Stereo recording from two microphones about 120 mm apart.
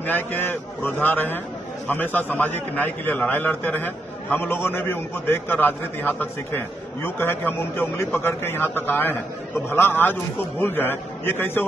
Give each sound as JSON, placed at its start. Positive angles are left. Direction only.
{"t": 0.0, "sound": "a man's voice", "side_deg": 15}